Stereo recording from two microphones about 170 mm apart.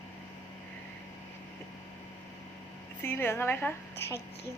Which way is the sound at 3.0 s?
15° left (ahead or behind).